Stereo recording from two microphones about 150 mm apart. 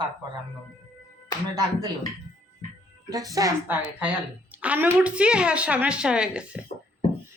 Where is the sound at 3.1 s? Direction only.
25° right (ahead or behind).